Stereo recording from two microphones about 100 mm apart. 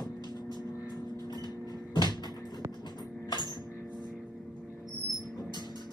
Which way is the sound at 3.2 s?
45° left (ahead or behind).